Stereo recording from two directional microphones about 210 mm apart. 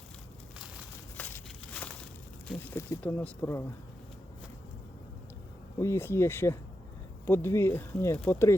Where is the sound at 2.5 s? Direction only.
10° left (ahead or behind).